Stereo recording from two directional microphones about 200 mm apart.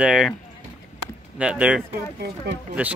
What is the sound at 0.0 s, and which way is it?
Speech, 5° right (ahead or behind).